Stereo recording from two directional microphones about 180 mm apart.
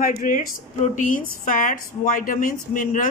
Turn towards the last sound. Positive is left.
turn(degrees=45)  # may be behind; listen again after turning